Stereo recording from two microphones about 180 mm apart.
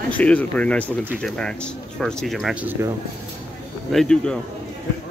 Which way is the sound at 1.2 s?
5° left (ahead or behind).